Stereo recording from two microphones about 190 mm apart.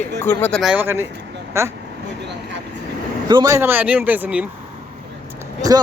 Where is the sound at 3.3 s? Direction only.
20° right (ahead or behind).